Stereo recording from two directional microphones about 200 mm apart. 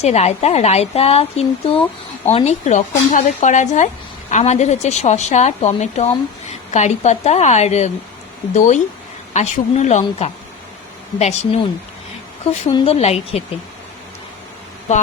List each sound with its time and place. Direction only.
0.0 s a woman's voice: 30° left (ahead or behind)
12.7 s a woman's voice: 30° left (ahead or behind)